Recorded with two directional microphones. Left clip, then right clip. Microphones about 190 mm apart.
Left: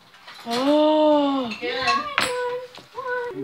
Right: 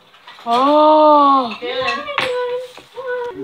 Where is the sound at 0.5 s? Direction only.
10° right (ahead or behind).